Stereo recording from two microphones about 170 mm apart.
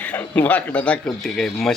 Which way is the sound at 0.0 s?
10° left (ahead or behind).